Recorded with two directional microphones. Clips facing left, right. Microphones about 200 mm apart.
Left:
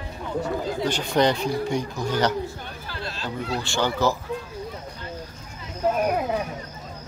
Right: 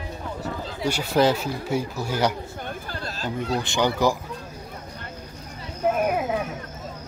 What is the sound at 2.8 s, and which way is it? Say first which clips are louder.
Chatter: left 2 dB; 45° right (ahead or behind).